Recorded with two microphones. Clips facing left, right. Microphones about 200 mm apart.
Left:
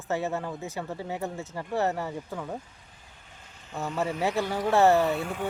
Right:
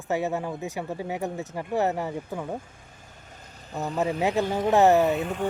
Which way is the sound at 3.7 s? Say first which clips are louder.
Right 2 dB; 35° right (ahead or behind).